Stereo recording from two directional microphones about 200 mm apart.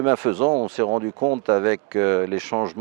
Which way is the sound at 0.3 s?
30° right (ahead or behind).